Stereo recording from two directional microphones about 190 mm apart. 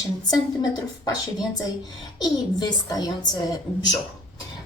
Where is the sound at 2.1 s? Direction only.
20° left (ahead or behind).